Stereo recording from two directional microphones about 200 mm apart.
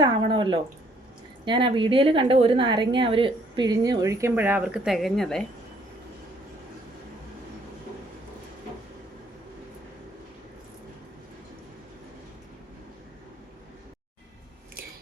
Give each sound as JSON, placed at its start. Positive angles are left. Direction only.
{"t": 0.0, "sound": "a woman's voice", "side_deg": -25}